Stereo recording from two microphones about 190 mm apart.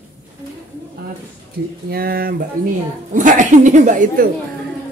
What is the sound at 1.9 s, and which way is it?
Mantra, 50° right (ahead or behind).